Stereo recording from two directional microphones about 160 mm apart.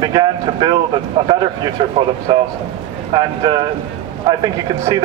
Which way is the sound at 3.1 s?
30° right (ahead or behind).